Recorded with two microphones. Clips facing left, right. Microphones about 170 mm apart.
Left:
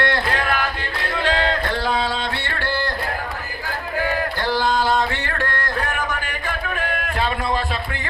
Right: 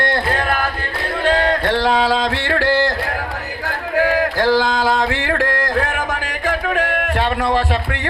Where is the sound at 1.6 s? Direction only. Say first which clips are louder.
Right 6 dB; 75° right (ahead or behind).